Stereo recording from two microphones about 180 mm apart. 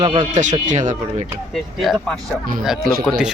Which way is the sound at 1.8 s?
Centre (ahead or behind).